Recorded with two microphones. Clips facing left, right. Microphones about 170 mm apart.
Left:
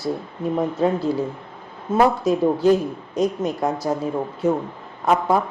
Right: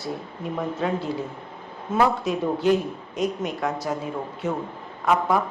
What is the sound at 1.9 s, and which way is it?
A man's voice, 40° left (ahead or behind).